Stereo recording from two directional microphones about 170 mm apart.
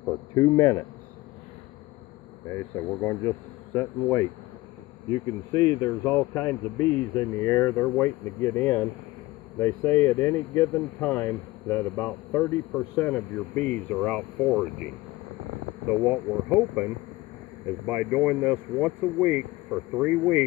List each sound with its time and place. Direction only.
0.0 s speech: 15° left (ahead or behind)
2.5 s speech: 15° left (ahead or behind)
5.9 s speech: 10° left (ahead or behind)
16.1 s speech: 10° right (ahead or behind)
17.8 s speech: 5° right (ahead or behind)